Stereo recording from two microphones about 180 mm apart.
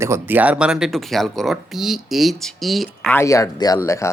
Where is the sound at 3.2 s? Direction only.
15° left (ahead or behind).